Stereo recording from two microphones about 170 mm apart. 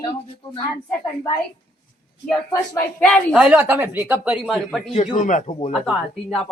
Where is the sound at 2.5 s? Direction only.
20° left (ahead or behind).